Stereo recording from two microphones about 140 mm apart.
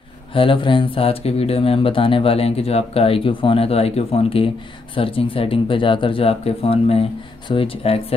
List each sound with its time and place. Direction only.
0.3 s speech: 40° left (ahead or behind)